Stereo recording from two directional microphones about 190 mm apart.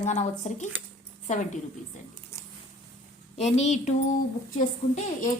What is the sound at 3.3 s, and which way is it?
A woman's voice, 35° left (ahead or behind).